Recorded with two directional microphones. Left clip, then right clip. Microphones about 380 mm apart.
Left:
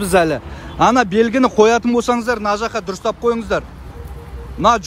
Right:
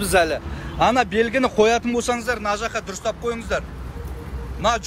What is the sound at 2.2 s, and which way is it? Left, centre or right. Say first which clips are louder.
Speech: left 5 dB; centre.